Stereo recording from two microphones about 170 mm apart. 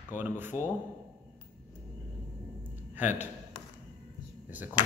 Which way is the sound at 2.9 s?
10° right (ahead or behind).